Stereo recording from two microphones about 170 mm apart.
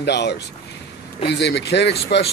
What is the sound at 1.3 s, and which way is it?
Speech, 90° left.